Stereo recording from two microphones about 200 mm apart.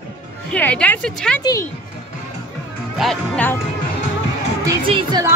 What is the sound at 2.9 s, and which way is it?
Speech, 5° left (ahead or behind).